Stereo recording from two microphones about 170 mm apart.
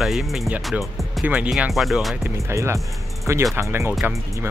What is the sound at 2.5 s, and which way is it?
Speech, 15° right (ahead or behind).